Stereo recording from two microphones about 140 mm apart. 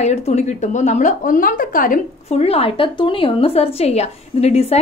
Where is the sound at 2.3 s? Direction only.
45° left (ahead or behind).